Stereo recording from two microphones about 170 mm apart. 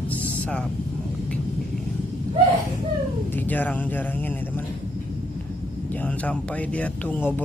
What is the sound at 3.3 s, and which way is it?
Speech, 10° left (ahead or behind).